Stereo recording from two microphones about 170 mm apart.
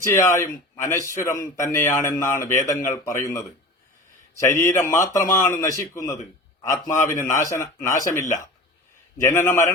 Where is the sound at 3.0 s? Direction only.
20° left (ahead or behind).